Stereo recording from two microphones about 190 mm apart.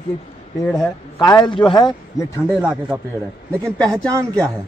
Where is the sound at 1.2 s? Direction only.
25° left (ahead or behind).